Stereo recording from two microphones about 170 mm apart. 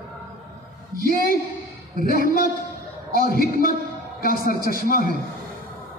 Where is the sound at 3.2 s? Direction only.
60° left (ahead or behind).